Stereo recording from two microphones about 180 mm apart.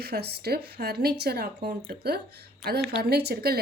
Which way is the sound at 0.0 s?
60° right (ahead or behind).